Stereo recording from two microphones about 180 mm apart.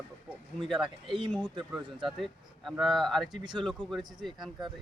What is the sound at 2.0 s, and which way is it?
Speech, centre (ahead or behind).